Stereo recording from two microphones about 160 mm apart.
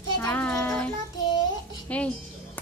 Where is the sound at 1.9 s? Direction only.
10° left (ahead or behind).